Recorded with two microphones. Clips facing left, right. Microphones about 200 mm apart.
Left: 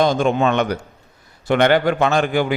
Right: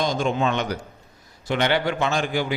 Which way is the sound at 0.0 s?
65° left (ahead or behind).